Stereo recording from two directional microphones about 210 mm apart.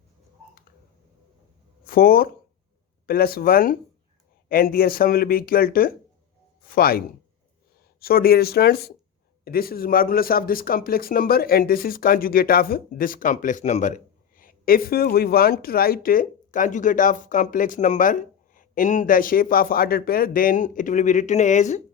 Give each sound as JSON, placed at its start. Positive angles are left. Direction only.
{"t": 1.9, "sound": "speech", "side_deg": 45}